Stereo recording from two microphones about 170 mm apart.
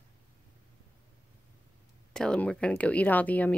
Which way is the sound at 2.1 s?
5° left (ahead or behind).